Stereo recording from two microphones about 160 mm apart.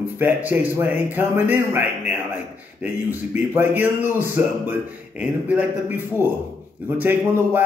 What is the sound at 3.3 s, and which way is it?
A man's voice, 15° right (ahead or behind).